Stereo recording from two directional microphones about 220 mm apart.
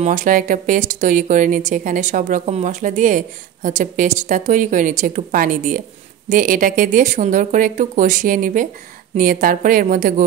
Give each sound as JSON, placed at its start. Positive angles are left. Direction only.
{"t": 0.0, "sound": "speech", "side_deg": -35}